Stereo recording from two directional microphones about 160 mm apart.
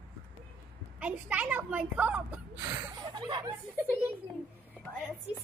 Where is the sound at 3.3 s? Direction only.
25° right (ahead or behind).